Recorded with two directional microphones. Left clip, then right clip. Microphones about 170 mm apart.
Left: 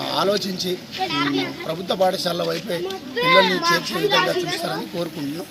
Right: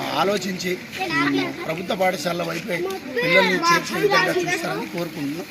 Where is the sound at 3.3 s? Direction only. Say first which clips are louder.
Left 2 dB; 20° right (ahead or behind).